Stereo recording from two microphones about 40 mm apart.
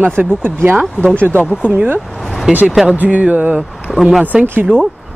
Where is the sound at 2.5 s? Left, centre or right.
Right.